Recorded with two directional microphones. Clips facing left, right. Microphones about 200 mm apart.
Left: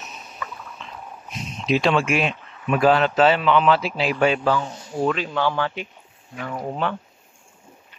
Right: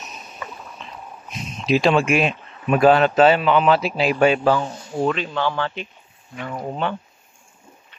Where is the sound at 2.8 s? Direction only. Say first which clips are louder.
Right 3 dB; 50° right (ahead or behind).